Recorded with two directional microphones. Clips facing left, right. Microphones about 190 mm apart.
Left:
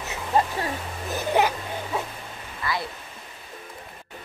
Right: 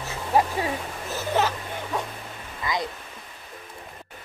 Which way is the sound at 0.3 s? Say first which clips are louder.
Right 1 dB; 10° right (ahead or behind).